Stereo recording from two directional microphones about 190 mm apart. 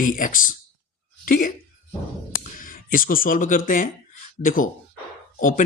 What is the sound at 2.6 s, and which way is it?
Speech, 45° left (ahead or behind).